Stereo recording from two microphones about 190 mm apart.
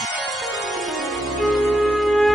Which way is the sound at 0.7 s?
Centre (ahead or behind).